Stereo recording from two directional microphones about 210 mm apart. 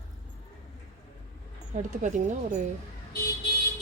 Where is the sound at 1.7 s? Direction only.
35° right (ahead or behind).